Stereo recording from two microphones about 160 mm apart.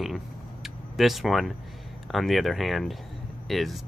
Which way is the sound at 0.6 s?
Centre (ahead or behind).